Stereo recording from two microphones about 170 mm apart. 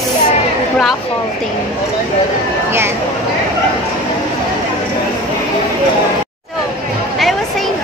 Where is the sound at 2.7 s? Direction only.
15° right (ahead or behind).